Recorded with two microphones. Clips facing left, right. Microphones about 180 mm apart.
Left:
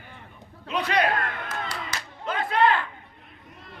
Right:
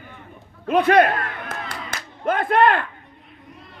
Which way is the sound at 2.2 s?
55° right (ahead or behind).